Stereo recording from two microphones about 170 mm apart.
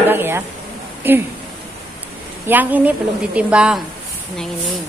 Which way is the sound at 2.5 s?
10° right (ahead or behind).